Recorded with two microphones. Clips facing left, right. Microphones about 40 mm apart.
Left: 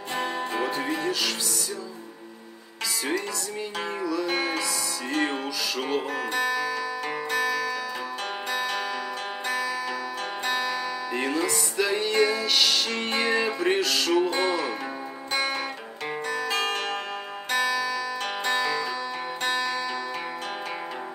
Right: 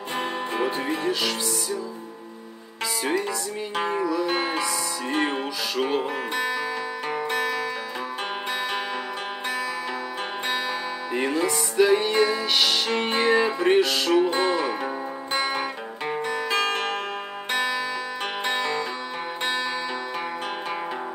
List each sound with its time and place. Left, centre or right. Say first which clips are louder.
0.2 s music: right 2 dB; centre
3.7 s music: right 5 dB; centre
11.1 s music: right 3 dB; centre